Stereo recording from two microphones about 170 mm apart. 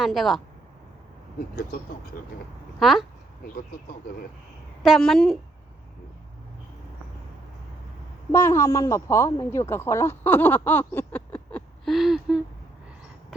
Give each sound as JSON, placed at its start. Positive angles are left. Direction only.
{"t": 0.0, "sound": "a woman's voice", "side_deg": 0}
{"t": 2.7, "sound": "a woman's voice", "side_deg": 0}
{"t": 3.4, "sound": "speech", "side_deg": 60}
{"t": 4.8, "sound": "a woman's voice", "side_deg": 0}
{"t": 8.3, "sound": "speech", "side_deg": 15}